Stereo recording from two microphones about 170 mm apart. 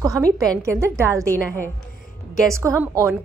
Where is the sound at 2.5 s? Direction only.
15° right (ahead or behind).